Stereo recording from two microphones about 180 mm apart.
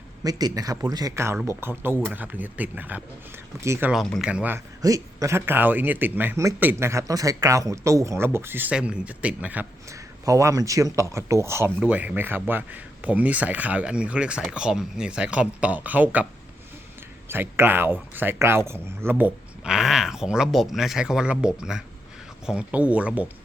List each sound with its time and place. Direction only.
0.3 s speech: 20° right (ahead or behind)
17.2 s speech: 10° right (ahead or behind)